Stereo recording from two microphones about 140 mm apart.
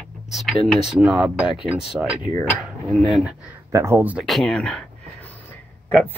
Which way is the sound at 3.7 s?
20° right (ahead or behind).